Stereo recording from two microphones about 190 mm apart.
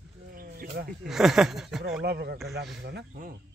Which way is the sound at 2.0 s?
60° right (ahead or behind).